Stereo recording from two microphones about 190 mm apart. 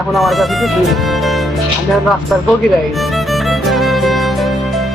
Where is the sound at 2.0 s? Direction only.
Centre (ahead or behind).